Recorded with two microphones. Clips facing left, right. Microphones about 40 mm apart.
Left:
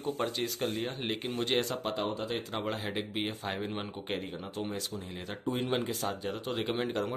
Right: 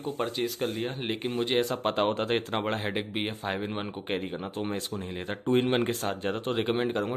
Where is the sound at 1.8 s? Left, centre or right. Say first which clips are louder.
Right 7 dB; right.